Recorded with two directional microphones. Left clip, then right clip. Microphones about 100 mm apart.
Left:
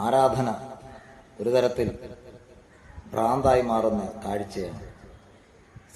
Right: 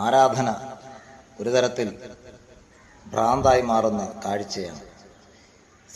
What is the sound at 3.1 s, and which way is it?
A man's voice, 15° left (ahead or behind).